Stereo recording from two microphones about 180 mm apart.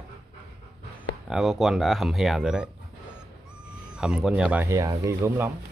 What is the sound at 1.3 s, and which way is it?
Speech, centre (ahead or behind).